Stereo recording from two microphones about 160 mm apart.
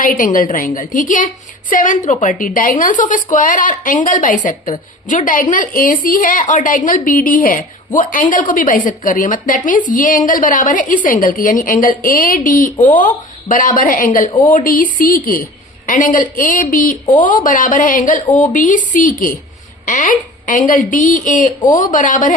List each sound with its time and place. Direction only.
0.0 s a woman's voice: 55° left (ahead or behind)